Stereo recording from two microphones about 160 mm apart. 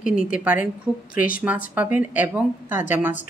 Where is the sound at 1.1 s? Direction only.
60° left (ahead or behind).